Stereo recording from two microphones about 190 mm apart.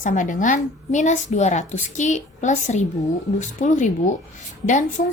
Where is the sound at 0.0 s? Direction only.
45° left (ahead or behind).